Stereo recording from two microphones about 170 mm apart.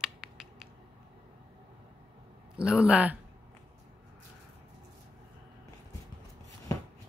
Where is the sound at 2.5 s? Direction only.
5° right (ahead or behind).